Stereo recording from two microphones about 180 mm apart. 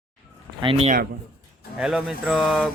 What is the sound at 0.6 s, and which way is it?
Speech, 30° right (ahead or behind).